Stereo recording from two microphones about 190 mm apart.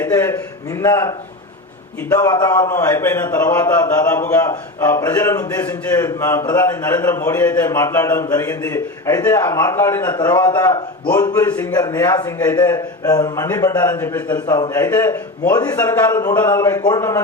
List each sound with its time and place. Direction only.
0.0 s a man's voice: 10° left (ahead or behind)